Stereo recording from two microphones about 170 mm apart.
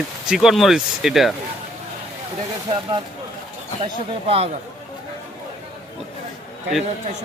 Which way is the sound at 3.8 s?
35° right (ahead or behind).